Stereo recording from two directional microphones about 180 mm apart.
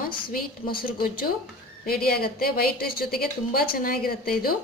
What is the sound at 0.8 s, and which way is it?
A woman's voice, 55° left (ahead or behind).